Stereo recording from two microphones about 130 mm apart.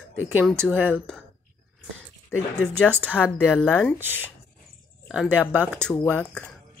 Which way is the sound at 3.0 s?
15° left (ahead or behind).